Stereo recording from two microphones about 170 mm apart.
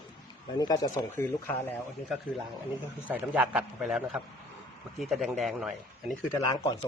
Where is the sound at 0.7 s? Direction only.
20° left (ahead or behind).